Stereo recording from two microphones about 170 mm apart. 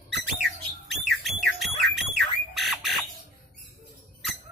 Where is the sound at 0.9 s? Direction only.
Centre (ahead or behind).